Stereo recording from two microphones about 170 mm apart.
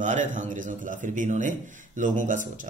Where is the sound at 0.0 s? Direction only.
45° right (ahead or behind).